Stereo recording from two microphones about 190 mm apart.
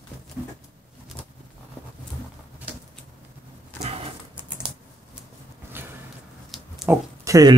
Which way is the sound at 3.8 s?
35° right (ahead or behind).